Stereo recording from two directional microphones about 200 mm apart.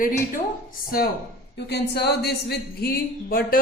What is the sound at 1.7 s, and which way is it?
Speech, 55° left (ahead or behind).